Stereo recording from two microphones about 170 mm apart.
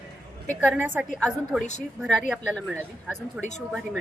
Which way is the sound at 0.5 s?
10° right (ahead or behind).